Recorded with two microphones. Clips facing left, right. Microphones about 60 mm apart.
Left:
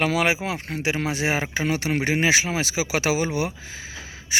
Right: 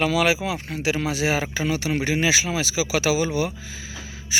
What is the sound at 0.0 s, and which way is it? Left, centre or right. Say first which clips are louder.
A man's voice: right 1 dB; left.